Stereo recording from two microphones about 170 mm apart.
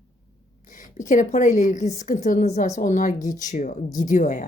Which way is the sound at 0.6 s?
50° left (ahead or behind).